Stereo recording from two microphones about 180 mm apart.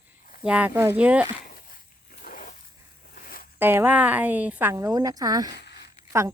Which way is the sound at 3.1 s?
55° left (ahead or behind).